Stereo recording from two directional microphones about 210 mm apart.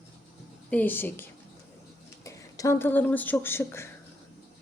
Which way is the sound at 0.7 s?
10° left (ahead or behind).